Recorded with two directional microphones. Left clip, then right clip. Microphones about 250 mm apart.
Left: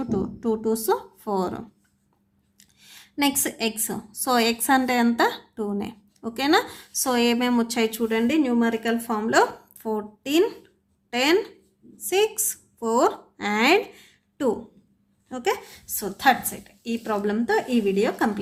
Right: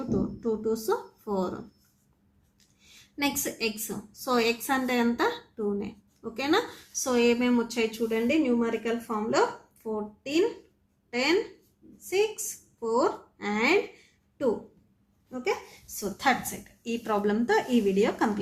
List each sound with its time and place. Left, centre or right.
0.1 s speech: left
2.9 s a woman's voice: left
15.3 s speech: left
16.0 s a woman's voice: left